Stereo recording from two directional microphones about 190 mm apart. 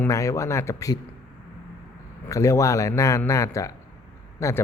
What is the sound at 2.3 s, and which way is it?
Speech, 15° left (ahead or behind).